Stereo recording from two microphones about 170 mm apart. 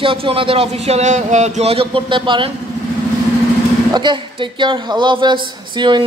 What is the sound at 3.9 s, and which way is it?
Speech, 25° right (ahead or behind).